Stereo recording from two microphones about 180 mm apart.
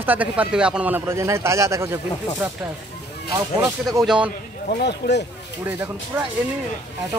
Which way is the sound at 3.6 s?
Centre (ahead or behind).